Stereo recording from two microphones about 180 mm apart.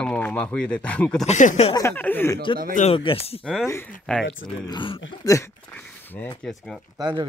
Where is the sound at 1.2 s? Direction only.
40° left (ahead or behind).